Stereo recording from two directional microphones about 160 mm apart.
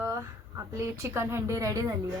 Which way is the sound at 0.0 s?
20° right (ahead or behind).